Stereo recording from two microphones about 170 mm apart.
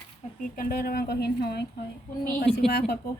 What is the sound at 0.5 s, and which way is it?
A woman's voice, 60° left (ahead or behind).